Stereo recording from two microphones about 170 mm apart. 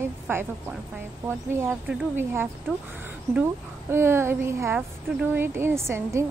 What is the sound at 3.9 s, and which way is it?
A woman's voice, 15° right (ahead or behind).